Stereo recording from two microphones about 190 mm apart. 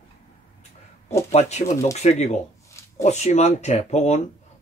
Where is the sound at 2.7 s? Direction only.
15° left (ahead or behind).